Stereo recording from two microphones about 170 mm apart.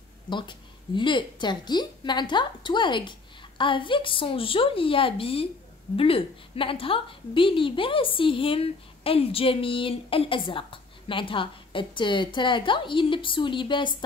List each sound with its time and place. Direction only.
0.3 s a woman's voice: 30° left (ahead or behind)